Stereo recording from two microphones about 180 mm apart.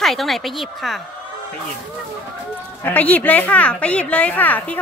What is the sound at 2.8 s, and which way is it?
A woman's voice, 10° left (ahead or behind).